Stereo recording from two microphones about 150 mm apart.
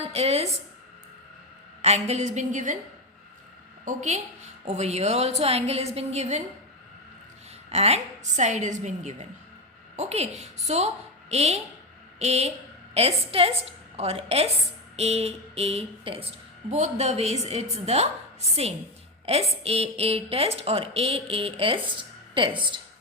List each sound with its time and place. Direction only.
0.0 s a woman's voice: 45° right (ahead or behind)
1.8 s a woman's voice: 45° right (ahead or behind)
3.8 s a woman's voice: 50° right (ahead or behind)
7.7 s a woman's voice: 45° right (ahead or behind)
16.6 s a woman's voice: 50° right (ahead or behind)
19.2 s a woman's voice: 40° right (ahead or behind)